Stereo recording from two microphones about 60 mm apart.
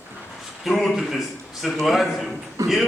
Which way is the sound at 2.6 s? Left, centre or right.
Right.